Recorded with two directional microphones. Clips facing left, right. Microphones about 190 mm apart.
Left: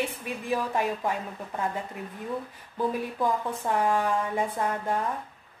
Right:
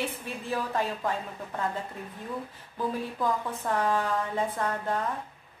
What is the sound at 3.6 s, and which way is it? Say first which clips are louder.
A woman's voice: left 2 dB; 15° left (ahead or behind).